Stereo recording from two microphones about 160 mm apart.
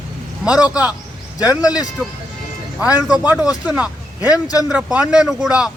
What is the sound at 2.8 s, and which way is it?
A man's voice, 10° right (ahead or behind).